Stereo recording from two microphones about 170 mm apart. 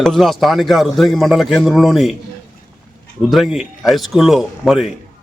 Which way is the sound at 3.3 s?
Centre (ahead or behind).